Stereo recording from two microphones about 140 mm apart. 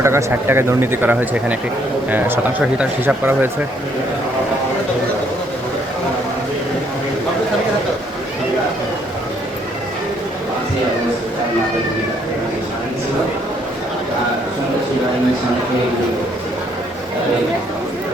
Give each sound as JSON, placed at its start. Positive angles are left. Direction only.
{"t": 0.0, "sound": "speech", "side_deg": -20}